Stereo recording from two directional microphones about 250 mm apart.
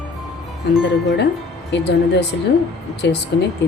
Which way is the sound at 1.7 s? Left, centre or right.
Left.